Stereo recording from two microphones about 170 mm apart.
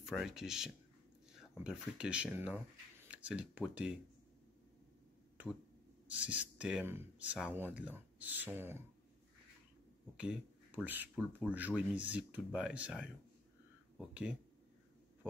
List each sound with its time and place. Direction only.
0.0 s speech: 5° right (ahead or behind)
6.1 s speech: 10° right (ahead or behind)
10.1 s speech: 5° right (ahead or behind)